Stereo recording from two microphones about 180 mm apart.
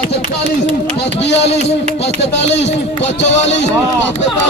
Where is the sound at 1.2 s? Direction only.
70° left (ahead or behind).